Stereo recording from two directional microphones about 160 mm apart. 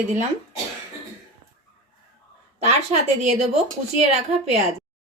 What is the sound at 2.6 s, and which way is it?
A woman's voice, 45° right (ahead or behind).